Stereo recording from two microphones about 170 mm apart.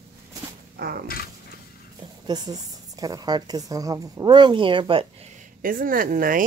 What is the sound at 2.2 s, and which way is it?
Speech, 25° right (ahead or behind).